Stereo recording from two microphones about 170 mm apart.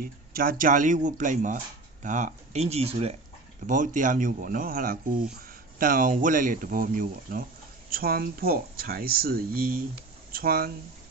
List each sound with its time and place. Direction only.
0.0 s speech: 60° right (ahead or behind); by 3.2 s 35° right (ahead or behind)
3.6 s speech: 50° right (ahead or behind)